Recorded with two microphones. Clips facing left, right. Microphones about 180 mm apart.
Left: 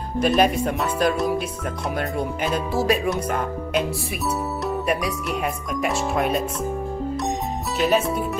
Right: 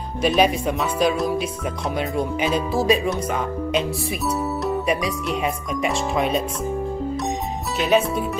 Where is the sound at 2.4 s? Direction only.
10° left (ahead or behind).